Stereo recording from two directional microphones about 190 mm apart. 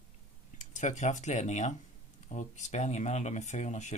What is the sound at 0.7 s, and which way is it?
Speech, 40° left (ahead or behind).